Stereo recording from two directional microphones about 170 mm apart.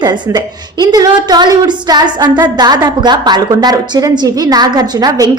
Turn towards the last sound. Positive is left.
turn(degrees=-25)  # may be behind; listen again after turning